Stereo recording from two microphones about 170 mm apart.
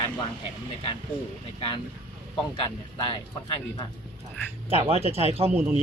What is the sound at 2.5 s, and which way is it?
Speech, 30° left (ahead or behind).